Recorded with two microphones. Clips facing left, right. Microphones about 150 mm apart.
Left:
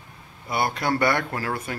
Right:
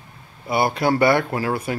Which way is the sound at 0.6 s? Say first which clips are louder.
Right 5 dB; 10° right (ahead or behind).